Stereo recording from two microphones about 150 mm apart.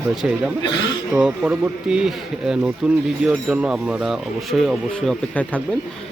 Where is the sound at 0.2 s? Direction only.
5° right (ahead or behind).